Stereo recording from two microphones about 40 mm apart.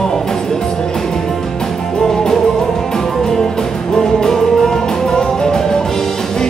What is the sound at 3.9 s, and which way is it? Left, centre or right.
Music, centre.